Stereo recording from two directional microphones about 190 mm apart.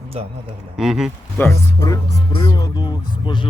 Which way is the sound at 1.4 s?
15° left (ahead or behind).